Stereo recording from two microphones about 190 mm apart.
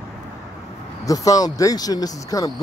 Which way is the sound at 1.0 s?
20° left (ahead or behind).